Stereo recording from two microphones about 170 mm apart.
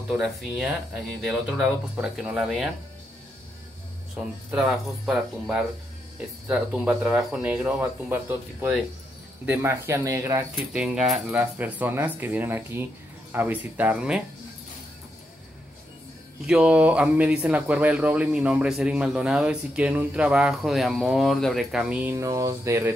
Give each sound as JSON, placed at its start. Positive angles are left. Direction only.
{"t": 0.2, "sound": "speech", "side_deg": -5}
{"t": 2.0, "sound": "speech", "side_deg": 0}
{"t": 4.5, "sound": "speech", "side_deg": 0}
{"t": 10.5, "sound": "speech", "side_deg": -5}
{"t": 16.4, "sound": "speech", "side_deg": -5}